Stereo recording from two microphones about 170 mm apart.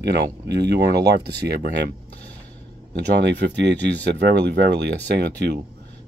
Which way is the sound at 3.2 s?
90° right.